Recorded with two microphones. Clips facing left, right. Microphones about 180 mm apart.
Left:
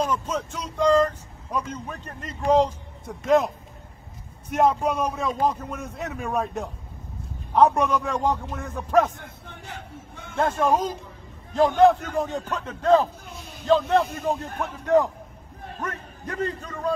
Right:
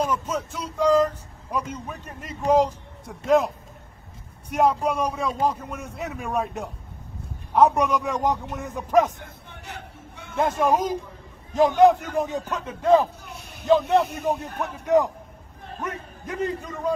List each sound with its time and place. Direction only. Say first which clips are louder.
0.0 s speech: even; 10° right (ahead or behind)
9.7 s a sound: even; 65° right (ahead or behind)
10.3 s speech: even; 15° right (ahead or behind)
13.2 s a sound: left 1 dB; 65° right (ahead or behind)
13.7 s speech: right 1 dB; 15° right (ahead or behind)
15.8 s speech: right 1 dB; 10° right (ahead or behind)